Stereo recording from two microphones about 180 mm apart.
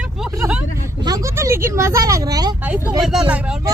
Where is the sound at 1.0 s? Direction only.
20° right (ahead or behind).